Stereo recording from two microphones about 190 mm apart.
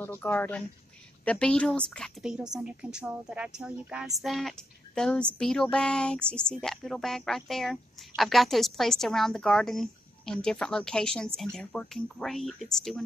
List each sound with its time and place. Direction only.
0.0 s speech: 10° left (ahead or behind)